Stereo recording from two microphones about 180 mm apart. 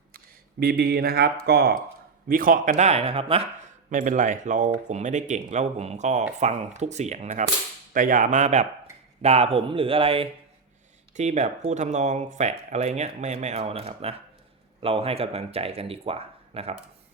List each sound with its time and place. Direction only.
0.6 s speech: 60° right (ahead or behind)
2.2 s speech: 50° right (ahead or behind); by 16.7 s 35° right (ahead or behind)